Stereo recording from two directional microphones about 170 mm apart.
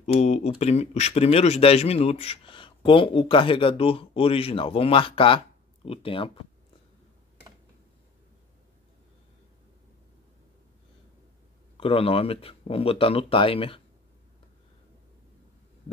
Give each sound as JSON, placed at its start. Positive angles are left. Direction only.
{"t": 0.0, "sound": "speech", "side_deg": 40}
{"t": 11.7, "sound": "speech", "side_deg": 35}